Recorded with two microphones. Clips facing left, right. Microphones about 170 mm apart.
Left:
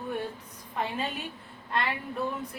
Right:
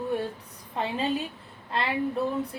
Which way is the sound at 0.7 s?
30° right (ahead or behind).